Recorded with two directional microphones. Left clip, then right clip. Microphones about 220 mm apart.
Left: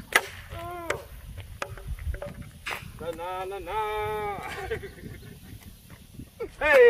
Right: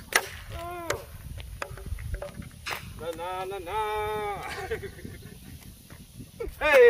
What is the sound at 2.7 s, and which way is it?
Speech, 10° right (ahead or behind).